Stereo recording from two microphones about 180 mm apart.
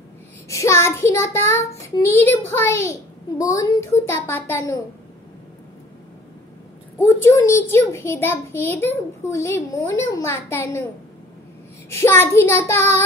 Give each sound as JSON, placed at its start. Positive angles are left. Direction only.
{"t": 0.5, "sound": "a child's voice", "side_deg": 15}
{"t": 7.1, "sound": "a child's voice", "side_deg": 15}
{"t": 11.9, "sound": "a child's voice", "side_deg": 15}